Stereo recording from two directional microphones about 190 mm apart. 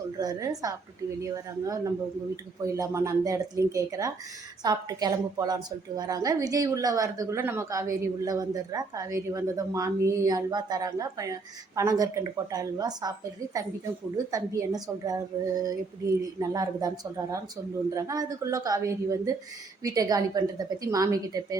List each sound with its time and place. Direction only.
0.2 s a woman's voice: 20° right (ahead or behind)
17.9 s a woman's voice: 20° right (ahead or behind)